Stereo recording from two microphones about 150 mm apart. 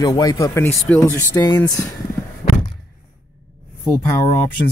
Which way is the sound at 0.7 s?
5° left (ahead or behind).